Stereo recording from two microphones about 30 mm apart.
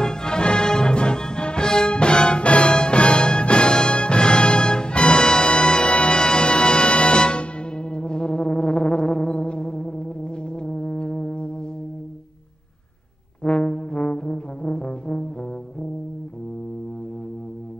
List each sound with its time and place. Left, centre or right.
0.0 s music: left
2.4 s music: left
13.4 s brass instrument: left